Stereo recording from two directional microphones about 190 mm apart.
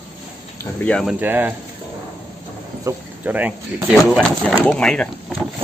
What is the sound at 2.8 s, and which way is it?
Speech, 10° right (ahead or behind).